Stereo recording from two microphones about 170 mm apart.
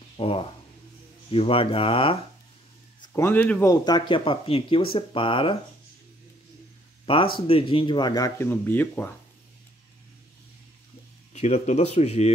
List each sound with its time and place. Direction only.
0.2 s speech: 35° left (ahead or behind)
3.1 s speech: 15° left (ahead or behind); by 5.6 s 30° left (ahead or behind)
7.3 s speech: 30° left (ahead or behind); by 9.1 s 10° left (ahead or behind)
11.3 s speech: 40° left (ahead or behind)